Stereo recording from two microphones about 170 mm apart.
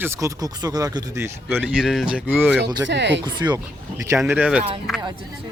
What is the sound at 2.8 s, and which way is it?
Speech, 90° right.